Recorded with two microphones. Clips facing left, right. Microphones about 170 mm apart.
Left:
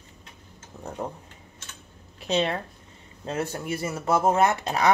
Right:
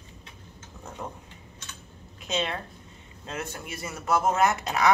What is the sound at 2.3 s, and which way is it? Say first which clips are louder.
Speech: left 5 dB; 35° left (ahead or behind).